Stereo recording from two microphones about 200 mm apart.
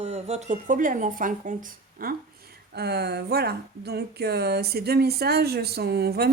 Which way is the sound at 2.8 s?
55° right (ahead or behind).